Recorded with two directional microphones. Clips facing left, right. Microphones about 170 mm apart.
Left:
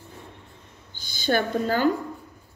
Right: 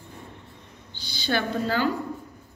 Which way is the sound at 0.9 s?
50° left (ahead or behind).